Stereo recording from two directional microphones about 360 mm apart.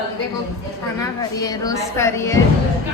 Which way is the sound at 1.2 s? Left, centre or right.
Centre.